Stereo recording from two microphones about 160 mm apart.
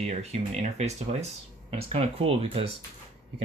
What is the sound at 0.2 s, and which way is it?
Speech, 45° right (ahead or behind).